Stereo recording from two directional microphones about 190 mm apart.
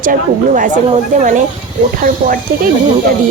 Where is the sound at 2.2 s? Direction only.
50° right (ahead or behind).